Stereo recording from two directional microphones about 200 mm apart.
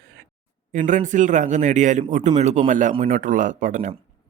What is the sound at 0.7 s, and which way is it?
A man's voice, 40° right (ahead or behind).